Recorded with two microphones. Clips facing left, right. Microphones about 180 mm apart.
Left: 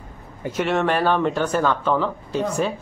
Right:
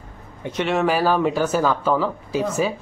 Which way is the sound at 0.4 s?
5° left (ahead or behind).